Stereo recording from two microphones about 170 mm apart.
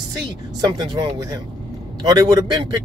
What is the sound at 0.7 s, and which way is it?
Speech, 25° right (ahead or behind).